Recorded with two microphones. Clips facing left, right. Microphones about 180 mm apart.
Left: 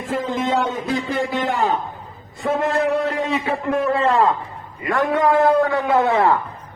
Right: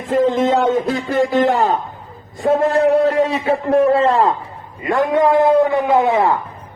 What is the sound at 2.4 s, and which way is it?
A man's voice, 30° right (ahead or behind).